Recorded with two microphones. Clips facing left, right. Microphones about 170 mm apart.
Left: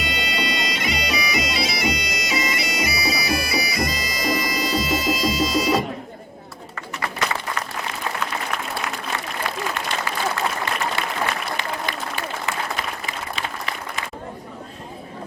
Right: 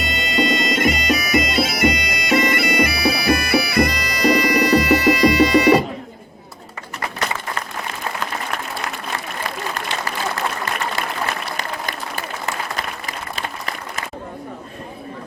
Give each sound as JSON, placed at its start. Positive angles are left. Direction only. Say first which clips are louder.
{"t": 0.0, "sound": "bagpipes", "louder": "right 5 dB", "side_deg": -45}
{"t": 11.5, "sound": "applause", "louder": "even", "side_deg": -45}